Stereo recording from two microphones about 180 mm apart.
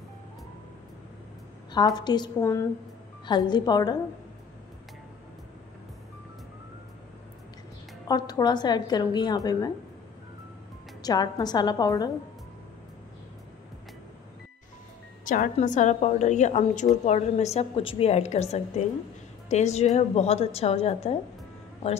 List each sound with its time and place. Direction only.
1.7 s a woman's voice: 25° left (ahead or behind)
8.1 s a woman's voice: 20° left (ahead or behind)
11.0 s a woman's voice: 20° left (ahead or behind)
15.2 s a woman's voice: 45° left (ahead or behind)